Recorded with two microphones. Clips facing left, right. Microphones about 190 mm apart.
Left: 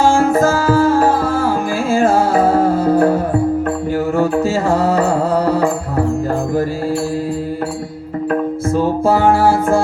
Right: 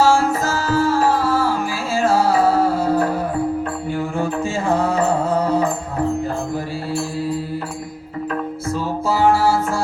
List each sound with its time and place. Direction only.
0.0 s music: 50° left (ahead or behind)
4.2 s music: 40° left (ahead or behind)
8.3 s music: 50° left (ahead or behind)